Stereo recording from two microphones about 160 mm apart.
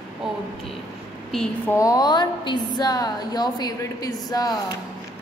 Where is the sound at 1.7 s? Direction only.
20° left (ahead or behind).